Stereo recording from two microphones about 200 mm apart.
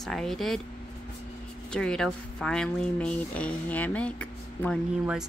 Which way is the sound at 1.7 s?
5° left (ahead or behind).